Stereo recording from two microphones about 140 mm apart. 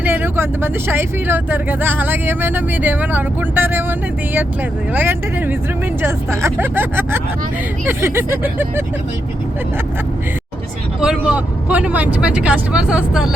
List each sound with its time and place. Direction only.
0.0 s speech: 15° right (ahead or behind)
4.9 s speech: 15° right (ahead or behind)
11.0 s speech: 5° right (ahead or behind)